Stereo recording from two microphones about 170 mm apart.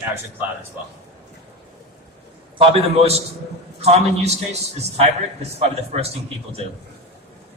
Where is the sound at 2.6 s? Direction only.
35° right (ahead or behind).